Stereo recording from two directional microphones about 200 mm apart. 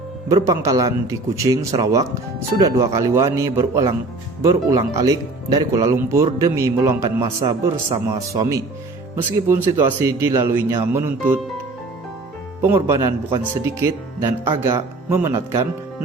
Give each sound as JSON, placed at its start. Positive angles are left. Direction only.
{"t": 0.3, "sound": "speech", "side_deg": -15}
{"t": 12.6, "sound": "speech", "side_deg": -15}